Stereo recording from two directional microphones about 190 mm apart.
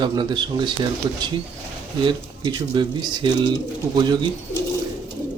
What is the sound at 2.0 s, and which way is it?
Speech, 25° right (ahead or behind).